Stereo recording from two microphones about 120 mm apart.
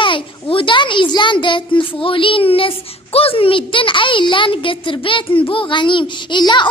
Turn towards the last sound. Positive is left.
turn(degrees=40)  # may be behind; listen again after turning